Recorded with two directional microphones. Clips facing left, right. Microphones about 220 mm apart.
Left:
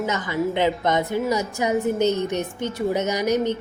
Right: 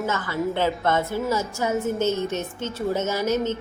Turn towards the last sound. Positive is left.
turn(degrees=15)  # may be behind; listen again after turning